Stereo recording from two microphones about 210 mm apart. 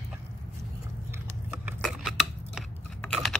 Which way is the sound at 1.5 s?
Centre (ahead or behind).